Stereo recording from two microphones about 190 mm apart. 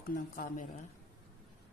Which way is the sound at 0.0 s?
45° left (ahead or behind).